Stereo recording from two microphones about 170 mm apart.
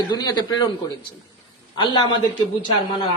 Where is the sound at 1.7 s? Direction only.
25° left (ahead or behind).